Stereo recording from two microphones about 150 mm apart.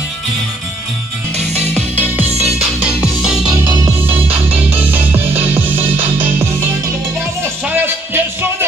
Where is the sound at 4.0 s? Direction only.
15° right (ahead or behind).